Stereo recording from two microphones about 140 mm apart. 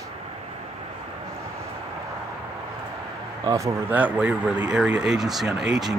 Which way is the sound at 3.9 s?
10° right (ahead or behind).